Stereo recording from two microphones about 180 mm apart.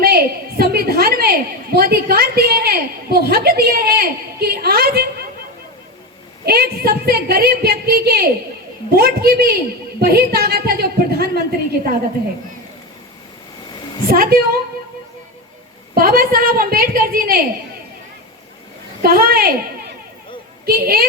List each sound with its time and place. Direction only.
0.0 s a sound: 60° right (ahead or behind)
6.4 s a woman's voice: 60° right (ahead or behind)
14.1 s a woman's voice: 55° right (ahead or behind)
16.0 s a woman's voice: 55° right (ahead or behind)
19.0 s a woman's voice: 55° right (ahead or behind)
20.7 s a woman's voice: 55° right (ahead or behind)